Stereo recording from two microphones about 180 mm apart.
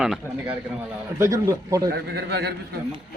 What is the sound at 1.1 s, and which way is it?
Speech, 15° right (ahead or behind).